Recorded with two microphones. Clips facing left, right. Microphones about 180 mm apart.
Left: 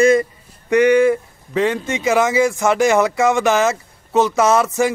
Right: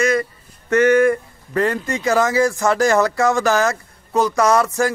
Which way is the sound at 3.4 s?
20° left (ahead or behind).